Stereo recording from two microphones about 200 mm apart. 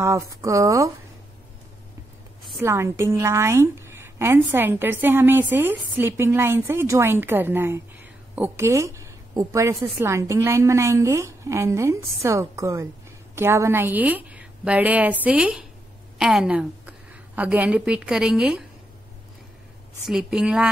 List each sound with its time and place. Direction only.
0.0 s a woman's voice: 15° right (ahead or behind)
2.6 s a woman's voice: 15° right (ahead or behind)
20.1 s a woman's voice: 5° right (ahead or behind)